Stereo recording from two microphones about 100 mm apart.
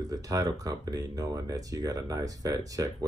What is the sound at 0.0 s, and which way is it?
Speech, 35° right (ahead or behind).